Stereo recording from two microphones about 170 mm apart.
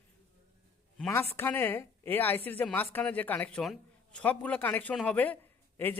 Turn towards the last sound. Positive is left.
turn(degrees=10)  # may be behind; listen again after turning